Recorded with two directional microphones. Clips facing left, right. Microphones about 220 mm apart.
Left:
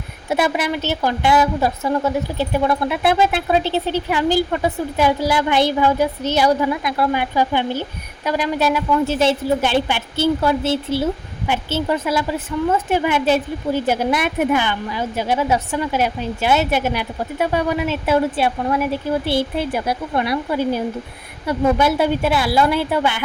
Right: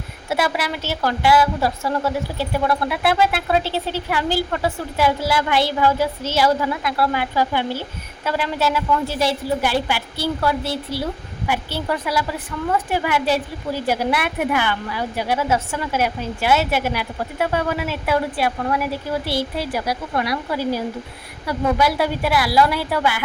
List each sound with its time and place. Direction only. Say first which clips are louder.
0.3 s a woman's voice: left 3 dB; 20° left (ahead or behind)